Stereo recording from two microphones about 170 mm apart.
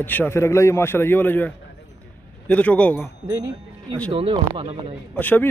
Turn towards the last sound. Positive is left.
turn(degrees=10)  # may be behind; listen again after turning